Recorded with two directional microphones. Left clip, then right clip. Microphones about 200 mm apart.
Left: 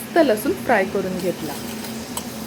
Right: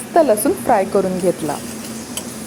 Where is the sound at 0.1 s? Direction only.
15° right (ahead or behind).